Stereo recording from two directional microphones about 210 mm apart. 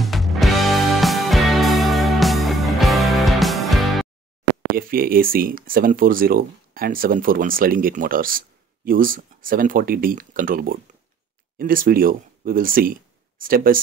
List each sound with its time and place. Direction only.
0.0 s music: centre (ahead or behind)
4.7 s speech: 45° right (ahead or behind)